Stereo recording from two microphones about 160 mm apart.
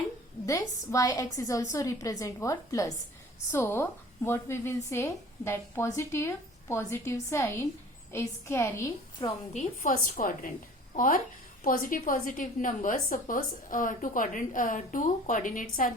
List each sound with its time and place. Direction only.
0.4 s a woman's voice: 20° left (ahead or behind)
9.5 s a woman's voice: 50° left (ahead or behind)